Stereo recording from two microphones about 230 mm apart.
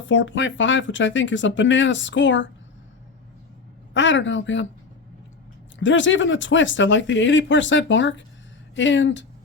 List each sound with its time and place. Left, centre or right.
0.1 s speech: left
3.9 s speech: left
5.8 s speech: left